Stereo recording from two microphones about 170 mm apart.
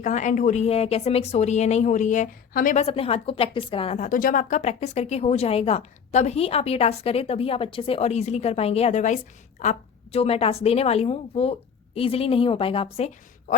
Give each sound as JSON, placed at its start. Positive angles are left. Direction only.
{"t": 0.0, "sound": "a woman's voice", "side_deg": 45}
{"t": 2.7, "sound": "a woman's voice", "side_deg": 35}